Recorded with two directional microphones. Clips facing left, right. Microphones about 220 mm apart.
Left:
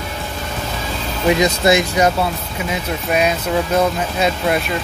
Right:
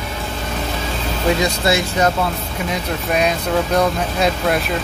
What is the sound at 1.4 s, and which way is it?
Speech, 15° left (ahead or behind).